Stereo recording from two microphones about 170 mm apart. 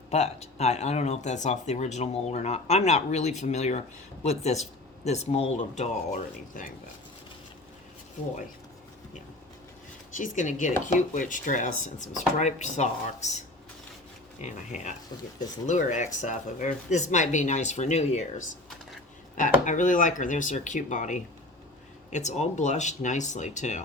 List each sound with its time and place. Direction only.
0.1 s speech: 40° left (ahead or behind)
6.5 s speech: 55° left (ahead or behind)
10.2 s speech: 45° left (ahead or behind)
14.4 s speech: 45° left (ahead or behind)